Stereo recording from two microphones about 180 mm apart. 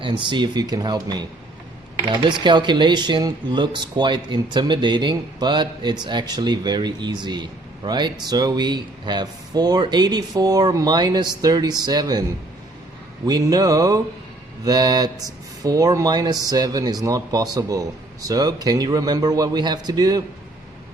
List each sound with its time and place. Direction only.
0.0 s speech: 25° right (ahead or behind)
13.2 s speech: 20° right (ahead or behind)